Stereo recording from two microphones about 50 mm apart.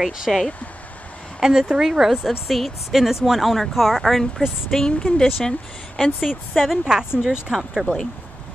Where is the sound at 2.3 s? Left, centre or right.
Centre.